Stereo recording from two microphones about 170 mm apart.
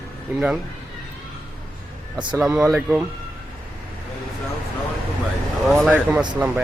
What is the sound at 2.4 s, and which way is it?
Speech, 5° right (ahead or behind).